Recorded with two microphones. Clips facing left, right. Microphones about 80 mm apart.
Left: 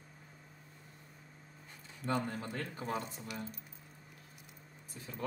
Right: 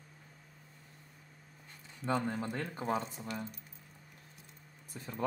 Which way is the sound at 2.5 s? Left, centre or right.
Right.